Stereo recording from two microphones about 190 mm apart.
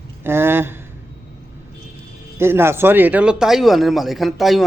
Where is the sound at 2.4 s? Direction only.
15° right (ahead or behind).